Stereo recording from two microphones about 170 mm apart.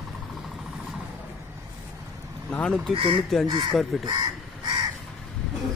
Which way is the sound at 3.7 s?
Centre (ahead or behind).